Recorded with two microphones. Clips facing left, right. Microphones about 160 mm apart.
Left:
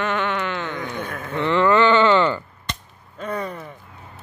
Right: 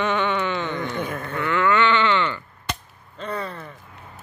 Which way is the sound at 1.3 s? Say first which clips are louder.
Left 4 dB; 30° left (ahead or behind).